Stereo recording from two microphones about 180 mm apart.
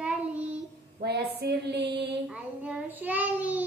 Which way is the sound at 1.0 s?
65° right (ahead or behind).